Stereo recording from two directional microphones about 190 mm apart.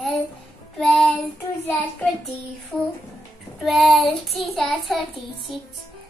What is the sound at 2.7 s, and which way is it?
Child singing, 5° left (ahead or behind).